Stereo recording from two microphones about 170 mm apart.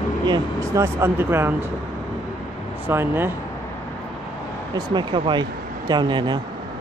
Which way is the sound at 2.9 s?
15° right (ahead or behind).